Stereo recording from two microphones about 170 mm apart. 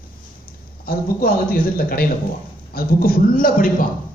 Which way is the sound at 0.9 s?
60° left (ahead or behind).